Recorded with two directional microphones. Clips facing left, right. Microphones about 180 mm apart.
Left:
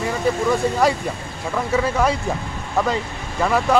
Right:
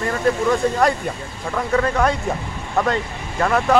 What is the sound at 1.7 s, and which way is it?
Speech, 5° left (ahead or behind).